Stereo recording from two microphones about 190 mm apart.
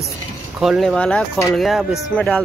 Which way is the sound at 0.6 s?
Centre (ahead or behind).